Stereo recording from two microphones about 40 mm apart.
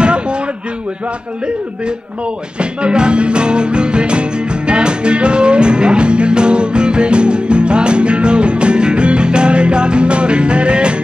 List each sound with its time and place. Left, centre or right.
0.0 s slam: right
2.6 s music: right